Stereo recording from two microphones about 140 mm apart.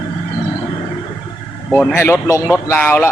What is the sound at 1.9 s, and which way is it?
Speech, 20° left (ahead or behind).